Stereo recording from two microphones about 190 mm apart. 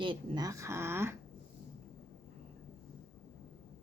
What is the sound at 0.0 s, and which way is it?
Speech, 25° right (ahead or behind).